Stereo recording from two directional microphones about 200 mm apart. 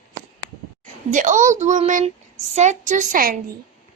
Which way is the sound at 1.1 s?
40° right (ahead or behind).